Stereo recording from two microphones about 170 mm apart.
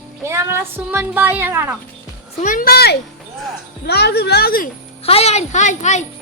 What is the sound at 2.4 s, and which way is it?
A woman's voice, 55° left (ahead or behind).